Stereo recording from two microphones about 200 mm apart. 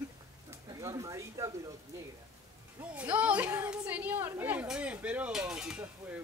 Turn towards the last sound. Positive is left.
turn(degrees=-5)  # may be behind; listen again after turning